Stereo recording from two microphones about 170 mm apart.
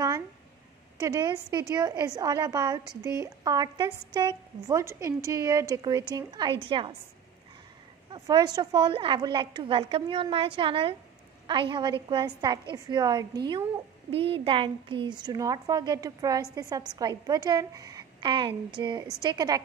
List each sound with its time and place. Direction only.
0.9 s a woman's voice: 20° right (ahead or behind)
8.1 s a woman's voice: 25° right (ahead or behind)
14.1 s a woman's voice: 30° right (ahead or behind)